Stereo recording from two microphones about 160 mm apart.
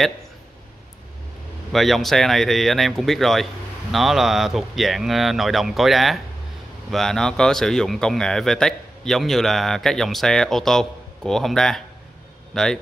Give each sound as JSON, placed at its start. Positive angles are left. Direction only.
{"t": 1.7, "sound": "speech", "side_deg": 0}